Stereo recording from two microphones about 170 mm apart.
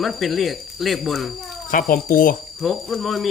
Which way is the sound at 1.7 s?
55° left (ahead or behind).